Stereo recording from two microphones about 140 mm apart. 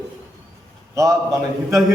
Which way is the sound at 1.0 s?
25° right (ahead or behind).